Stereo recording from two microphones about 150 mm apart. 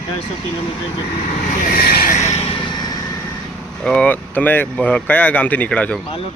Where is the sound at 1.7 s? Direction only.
80° left.